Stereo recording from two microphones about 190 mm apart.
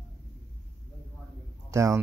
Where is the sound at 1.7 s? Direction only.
15° right (ahead or behind).